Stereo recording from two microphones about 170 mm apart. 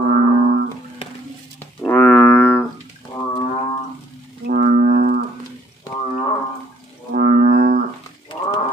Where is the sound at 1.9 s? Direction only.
15° left (ahead or behind).